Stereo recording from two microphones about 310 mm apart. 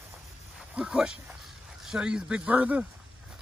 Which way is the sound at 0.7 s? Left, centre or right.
Centre.